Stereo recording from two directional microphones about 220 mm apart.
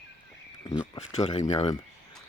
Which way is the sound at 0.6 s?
20° left (ahead or behind).